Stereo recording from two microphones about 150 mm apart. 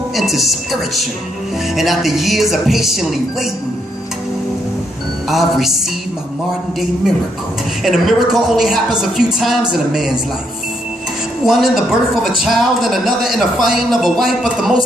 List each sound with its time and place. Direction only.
0.1 s a man's voice: centre (ahead or behind)
5.3 s a man's voice: centre (ahead or behind)
7.8 s a man's voice: centre (ahead or behind)
11.4 s a man's voice: centre (ahead or behind)